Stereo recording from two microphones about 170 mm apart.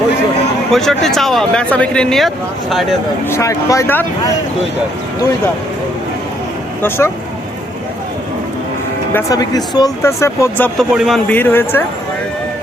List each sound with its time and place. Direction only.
0.7 s speech: centre (ahead or behind)
3.2 s speech: 15° left (ahead or behind)
6.8 s speech: 15° left (ahead or behind)
9.1 s speech: 20° left (ahead or behind)
10.8 s speech: centre (ahead or behind)
11.3 s speech: 10° left (ahead or behind)